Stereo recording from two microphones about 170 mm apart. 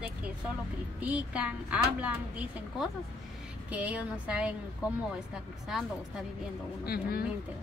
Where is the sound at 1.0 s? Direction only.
10° right (ahead or behind).